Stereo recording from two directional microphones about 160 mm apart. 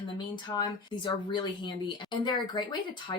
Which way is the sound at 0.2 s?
30° left (ahead or behind).